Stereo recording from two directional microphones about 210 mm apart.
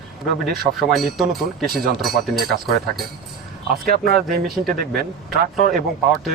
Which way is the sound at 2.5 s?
45° right (ahead or behind).